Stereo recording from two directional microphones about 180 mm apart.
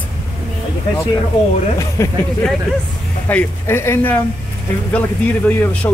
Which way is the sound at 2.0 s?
15° left (ahead or behind).